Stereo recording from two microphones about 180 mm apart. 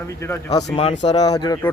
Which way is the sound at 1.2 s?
20° left (ahead or behind).